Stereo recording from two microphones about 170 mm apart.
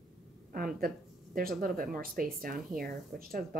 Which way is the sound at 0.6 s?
60° right (ahead or behind).